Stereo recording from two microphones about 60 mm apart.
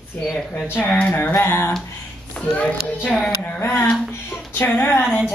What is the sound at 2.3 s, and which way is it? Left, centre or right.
Speech, centre.